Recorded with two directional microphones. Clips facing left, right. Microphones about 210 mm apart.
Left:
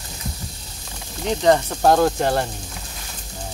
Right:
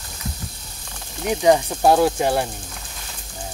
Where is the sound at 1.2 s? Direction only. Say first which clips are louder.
Right 1 dB; 10° right (ahead or behind).